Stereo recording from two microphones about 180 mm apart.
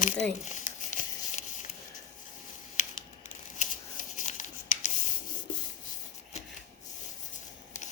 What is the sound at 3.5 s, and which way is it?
Rub, 45° left (ahead or behind).